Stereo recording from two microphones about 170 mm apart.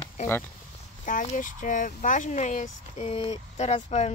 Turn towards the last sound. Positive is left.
turn(degrees=40)  # may be behind; listen again after turning